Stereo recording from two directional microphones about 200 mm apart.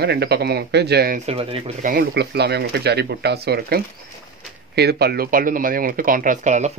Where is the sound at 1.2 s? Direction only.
30° right (ahead or behind).